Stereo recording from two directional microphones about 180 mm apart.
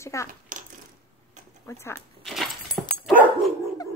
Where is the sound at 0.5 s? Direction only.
45° right (ahead or behind).